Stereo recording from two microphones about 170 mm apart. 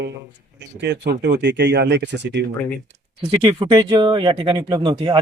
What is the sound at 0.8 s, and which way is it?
Speech, 80° right.